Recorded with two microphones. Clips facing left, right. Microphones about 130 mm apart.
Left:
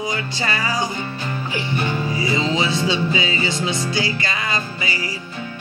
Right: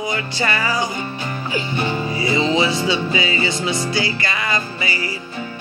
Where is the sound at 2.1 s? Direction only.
Centre (ahead or behind).